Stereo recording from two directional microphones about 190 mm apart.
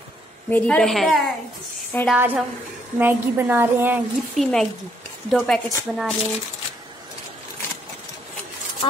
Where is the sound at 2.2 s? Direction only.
10° right (ahead or behind).